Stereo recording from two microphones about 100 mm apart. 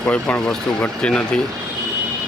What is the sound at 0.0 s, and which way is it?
Speech, 15° left (ahead or behind).